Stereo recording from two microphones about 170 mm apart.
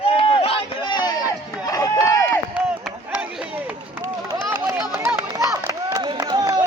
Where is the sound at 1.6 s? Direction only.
20° left (ahead or behind).